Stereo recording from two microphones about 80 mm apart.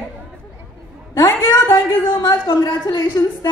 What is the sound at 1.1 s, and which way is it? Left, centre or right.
Speech, left.